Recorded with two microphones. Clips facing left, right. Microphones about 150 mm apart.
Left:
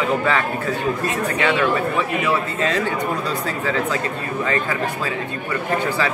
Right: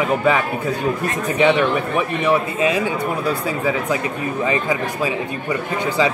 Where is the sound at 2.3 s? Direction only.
10° right (ahead or behind).